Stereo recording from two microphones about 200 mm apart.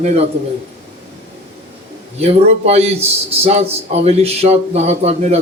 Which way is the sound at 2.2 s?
30° right (ahead or behind).